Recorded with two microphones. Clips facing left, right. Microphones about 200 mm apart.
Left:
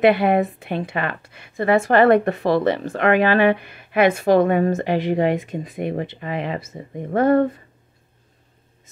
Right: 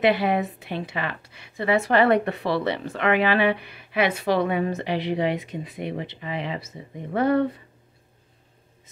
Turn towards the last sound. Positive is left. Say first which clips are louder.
# left 5 dB
turn(degrees=50)  # may be behind; listen again after turning